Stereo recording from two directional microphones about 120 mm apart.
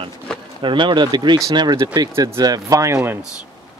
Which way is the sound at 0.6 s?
40° right (ahead or behind).